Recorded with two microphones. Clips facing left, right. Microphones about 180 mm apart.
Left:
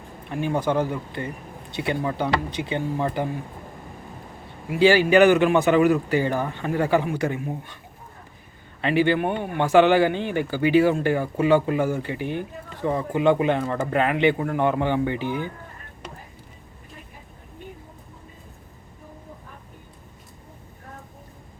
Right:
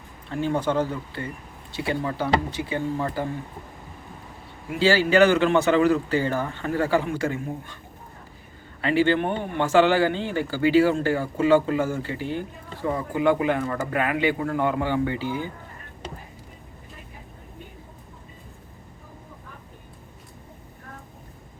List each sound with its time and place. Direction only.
0.3 s speech: 15° left (ahead or behind)
4.8 s speech: 15° left (ahead or behind)
8.8 s speech: 20° left (ahead or behind)